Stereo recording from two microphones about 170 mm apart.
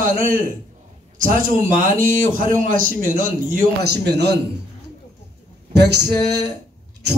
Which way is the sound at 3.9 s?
80° right.